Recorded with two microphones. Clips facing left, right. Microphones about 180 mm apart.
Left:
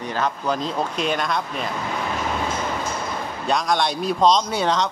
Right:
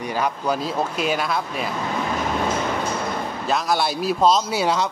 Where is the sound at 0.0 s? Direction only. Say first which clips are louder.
Right 1 dB; 10° right (ahead or behind).